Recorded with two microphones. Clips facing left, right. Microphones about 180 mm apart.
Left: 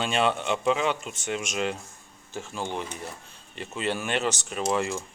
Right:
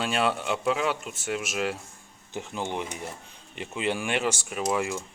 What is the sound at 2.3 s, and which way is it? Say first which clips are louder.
Speech: right 1 dB; 20° right (ahead or behind).